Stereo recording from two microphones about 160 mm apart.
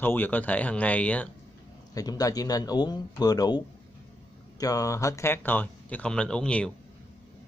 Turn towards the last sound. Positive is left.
turn(degrees=5)  # may be behind; listen again after turning